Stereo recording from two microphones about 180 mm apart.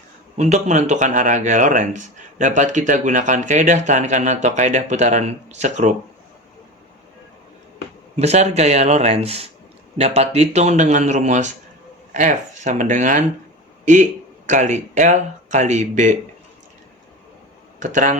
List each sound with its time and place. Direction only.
0.3 s speech: 40° right (ahead or behind)
8.1 s speech: 40° right (ahead or behind)
17.7 s speech: 45° right (ahead or behind)